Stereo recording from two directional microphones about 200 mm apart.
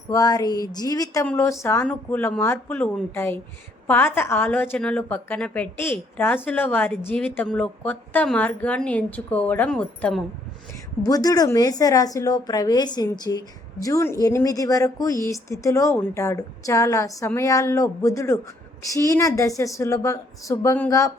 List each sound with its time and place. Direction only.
0.1 s a woman's voice: 20° left (ahead or behind)
11.0 s a woman's voice: 20° left (ahead or behind)